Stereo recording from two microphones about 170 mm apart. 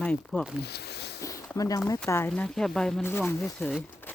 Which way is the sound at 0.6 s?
75° left (ahead or behind).